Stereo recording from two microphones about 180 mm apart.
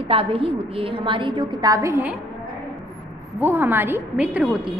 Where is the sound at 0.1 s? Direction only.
30° right (ahead or behind); by 2.1 s 15° right (ahead or behind).